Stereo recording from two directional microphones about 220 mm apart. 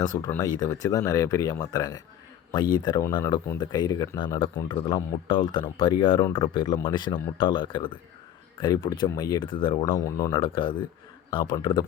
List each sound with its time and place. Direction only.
0.0 s speech: 15° left (ahead or behind)